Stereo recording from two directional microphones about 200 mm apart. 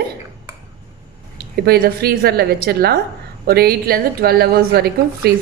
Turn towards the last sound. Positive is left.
turn(degrees=-50)  # may be behind; listen again after turning